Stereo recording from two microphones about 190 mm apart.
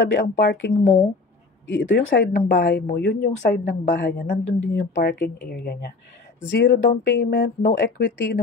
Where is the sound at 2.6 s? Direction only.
55° left (ahead or behind).